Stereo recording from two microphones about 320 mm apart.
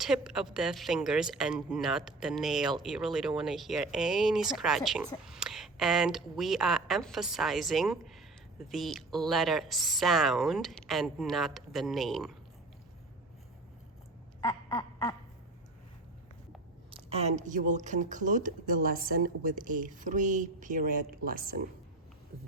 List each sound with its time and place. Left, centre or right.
0.0 s speech: centre
14.4 s quack: centre
16.9 s speech: centre